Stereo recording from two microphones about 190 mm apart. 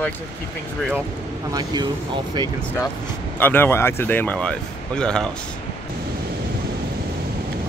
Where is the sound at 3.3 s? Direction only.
10° left (ahead or behind).